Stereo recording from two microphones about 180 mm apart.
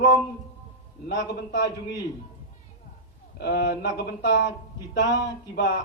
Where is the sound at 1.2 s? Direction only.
70° left (ahead or behind).